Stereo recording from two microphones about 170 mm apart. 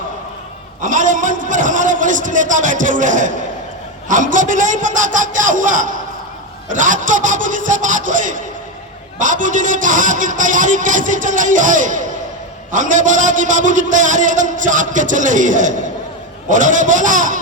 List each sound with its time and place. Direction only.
0.8 s a man's voice: 50° right (ahead or behind)